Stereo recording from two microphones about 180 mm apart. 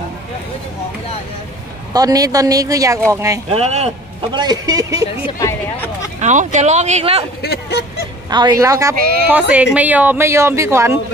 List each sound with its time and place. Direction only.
2.0 s a woman's voice: 20° right (ahead or behind)
3.5 s speech: 35° right (ahead or behind)
4.3 s speech: 25° right (ahead or behind)
6.1 s speech: 40° right (ahead or behind)
7.4 s speech: 65° left (ahead or behind)
8.3 s a woman's voice: 25° right (ahead or behind)